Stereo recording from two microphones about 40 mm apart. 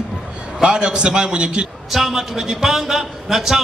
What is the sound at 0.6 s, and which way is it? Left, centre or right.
A man's voice, right.